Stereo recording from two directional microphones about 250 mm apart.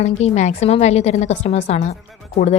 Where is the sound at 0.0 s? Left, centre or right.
Left.